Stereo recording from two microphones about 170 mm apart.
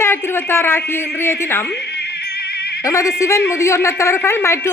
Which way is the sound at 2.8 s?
20° left (ahead or behind).